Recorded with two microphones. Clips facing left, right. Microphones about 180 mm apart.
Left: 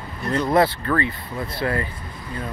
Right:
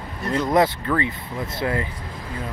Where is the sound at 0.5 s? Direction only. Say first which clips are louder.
Even; 15° right (ahead or behind).